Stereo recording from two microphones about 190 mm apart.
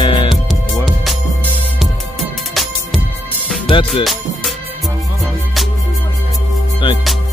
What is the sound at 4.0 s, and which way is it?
Music, centre (ahead or behind).